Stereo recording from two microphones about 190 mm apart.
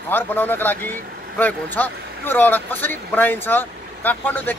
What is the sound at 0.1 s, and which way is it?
Speech, 10° left (ahead or behind).